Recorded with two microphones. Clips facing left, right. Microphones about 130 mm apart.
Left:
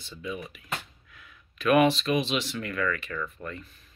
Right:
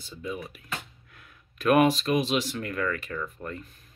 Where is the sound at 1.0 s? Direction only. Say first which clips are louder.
Even; 45° right (ahead or behind).